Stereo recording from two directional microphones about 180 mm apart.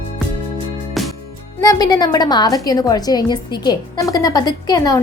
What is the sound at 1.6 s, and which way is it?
A woman's voice, 20° left (ahead or behind).